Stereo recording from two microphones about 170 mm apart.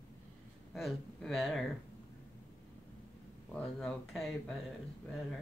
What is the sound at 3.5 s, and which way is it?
Speech, 5° left (ahead or behind).